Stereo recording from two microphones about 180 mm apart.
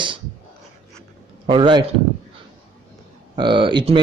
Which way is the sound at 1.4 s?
25° right (ahead or behind).